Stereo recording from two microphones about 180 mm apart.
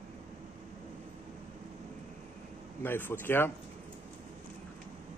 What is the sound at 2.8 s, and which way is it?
Speech, 10° left (ahead or behind).